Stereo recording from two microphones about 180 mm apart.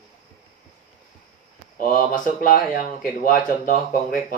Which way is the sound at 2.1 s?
50° left (ahead or behind).